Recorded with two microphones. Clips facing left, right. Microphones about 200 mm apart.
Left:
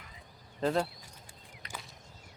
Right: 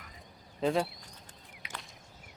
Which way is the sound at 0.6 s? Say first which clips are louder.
Right 1 dB; centre (ahead or behind).